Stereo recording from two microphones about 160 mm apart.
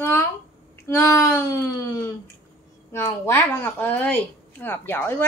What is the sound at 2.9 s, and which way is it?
A woman's voice, 15° left (ahead or behind).